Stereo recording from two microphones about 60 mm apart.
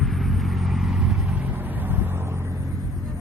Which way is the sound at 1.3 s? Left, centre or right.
Right.